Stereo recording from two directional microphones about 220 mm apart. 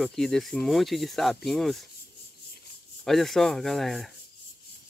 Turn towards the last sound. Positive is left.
turn(degrees=0)  # may be behind; listen again after turning